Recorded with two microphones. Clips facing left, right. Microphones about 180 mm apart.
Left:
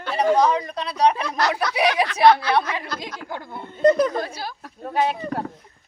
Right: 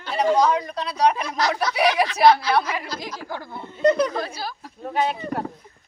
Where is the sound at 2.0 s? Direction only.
55° left (ahead or behind).